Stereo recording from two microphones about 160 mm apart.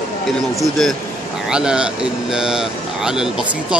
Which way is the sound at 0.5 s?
Centre (ahead or behind).